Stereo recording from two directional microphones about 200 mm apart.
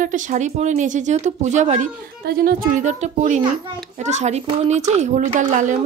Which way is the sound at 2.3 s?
50° right (ahead or behind).